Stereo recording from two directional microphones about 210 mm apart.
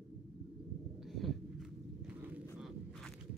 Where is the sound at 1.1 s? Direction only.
Centre (ahead or behind).